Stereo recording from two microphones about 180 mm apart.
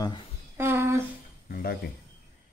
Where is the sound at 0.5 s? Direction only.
15° right (ahead or behind).